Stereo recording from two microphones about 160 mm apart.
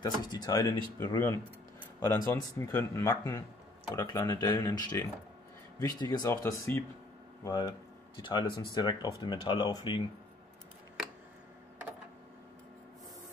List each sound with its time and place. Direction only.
0.0 s speech: 25° left (ahead or behind)